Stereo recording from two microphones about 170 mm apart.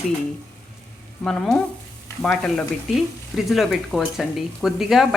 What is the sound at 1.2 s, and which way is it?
Speech, 5° left (ahead or behind).